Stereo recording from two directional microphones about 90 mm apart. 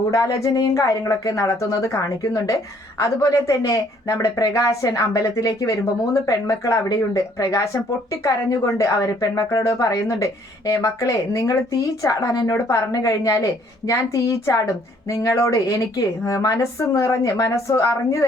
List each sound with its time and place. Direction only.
0.1 s speech: 35° left (ahead or behind)